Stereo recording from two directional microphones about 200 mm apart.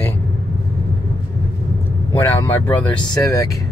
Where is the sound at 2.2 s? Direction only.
10° left (ahead or behind).